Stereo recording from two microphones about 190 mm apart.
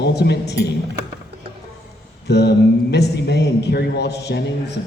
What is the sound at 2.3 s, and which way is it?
A man's voice, 60° left (ahead or behind).